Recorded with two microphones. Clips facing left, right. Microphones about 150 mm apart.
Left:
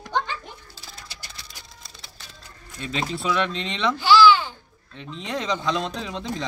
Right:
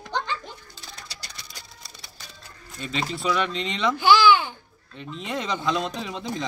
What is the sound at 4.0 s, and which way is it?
Babbling, 55° right (ahead or behind).